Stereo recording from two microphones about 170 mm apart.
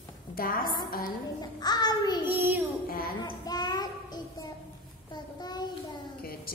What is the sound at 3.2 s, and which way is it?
Child singing, 25° left (ahead or behind).